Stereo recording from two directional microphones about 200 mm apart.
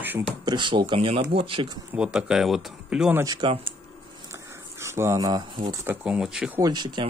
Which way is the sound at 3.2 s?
20° right (ahead or behind).